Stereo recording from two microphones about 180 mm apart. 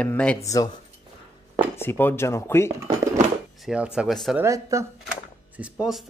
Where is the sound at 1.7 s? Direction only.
15° left (ahead or behind).